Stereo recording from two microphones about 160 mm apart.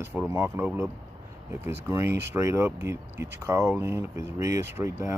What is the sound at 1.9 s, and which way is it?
Speech, 15° right (ahead or behind).